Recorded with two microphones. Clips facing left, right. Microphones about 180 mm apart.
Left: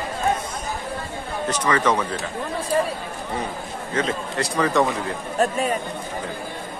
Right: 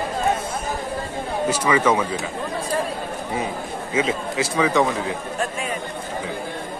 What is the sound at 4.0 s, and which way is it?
Speech, 5° right (ahead or behind).